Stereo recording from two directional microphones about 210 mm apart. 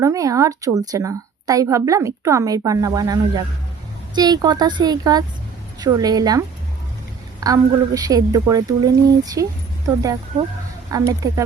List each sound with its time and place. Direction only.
0.0 s a woman's voice: 15° right (ahead or behind)
7.4 s a woman's voice: 15° right (ahead or behind)